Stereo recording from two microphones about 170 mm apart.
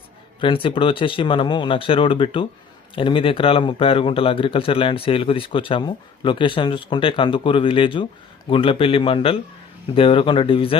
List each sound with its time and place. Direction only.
0.3 s a man's voice: 30° left (ahead or behind)